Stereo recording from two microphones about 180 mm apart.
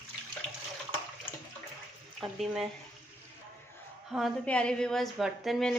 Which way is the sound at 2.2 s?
Centre (ahead or behind).